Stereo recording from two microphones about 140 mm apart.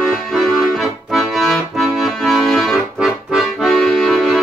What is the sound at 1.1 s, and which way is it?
Accordion, centre (ahead or behind).